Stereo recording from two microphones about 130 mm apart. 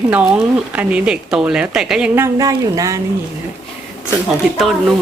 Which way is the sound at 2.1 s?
25° right (ahead or behind).